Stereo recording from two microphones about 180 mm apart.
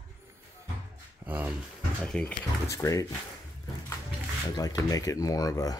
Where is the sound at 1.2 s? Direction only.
10° right (ahead or behind).